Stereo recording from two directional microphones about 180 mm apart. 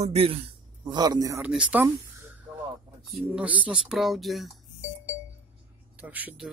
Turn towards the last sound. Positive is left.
turn(degrees=-10)  # may be behind; listen again after turning